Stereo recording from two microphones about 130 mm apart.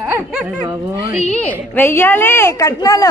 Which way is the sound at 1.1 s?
60° left (ahead or behind).